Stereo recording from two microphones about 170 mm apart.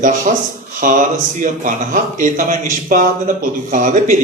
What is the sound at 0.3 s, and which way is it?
A man's voice, 50° right (ahead or behind).